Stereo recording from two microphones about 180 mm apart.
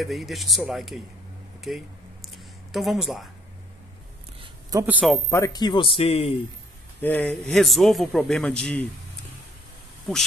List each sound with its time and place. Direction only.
0.0 s a man's voice: centre (ahead or behind)
2.2 s a sound: centre (ahead or behind)
4.6 s speech: 15° right (ahead or behind)
5.3 s a man's voice: 20° left (ahead or behind)
7.0 s a man's voice: 10° left (ahead or behind)
10.1 s a man's voice: centre (ahead or behind)